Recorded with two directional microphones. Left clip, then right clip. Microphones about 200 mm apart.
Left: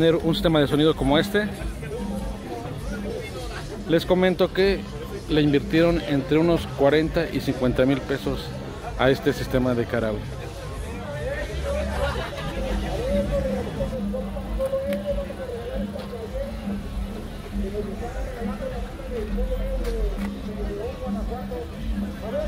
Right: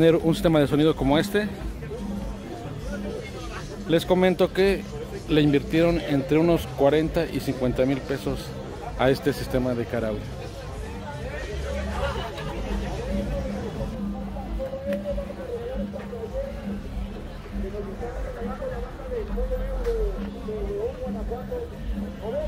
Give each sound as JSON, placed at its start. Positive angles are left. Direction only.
{"t": 0.0, "sound": "a man's voice", "side_deg": -20}
{"t": 3.9, "sound": "a man's voice", "side_deg": -10}